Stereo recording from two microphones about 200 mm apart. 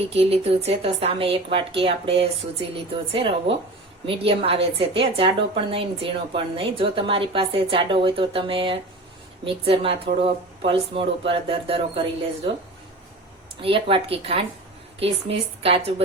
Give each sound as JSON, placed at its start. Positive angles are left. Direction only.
{"t": 0.2, "sound": "a woman's voice", "side_deg": -30}
{"t": 13.6, "sound": "a woman's voice", "side_deg": -25}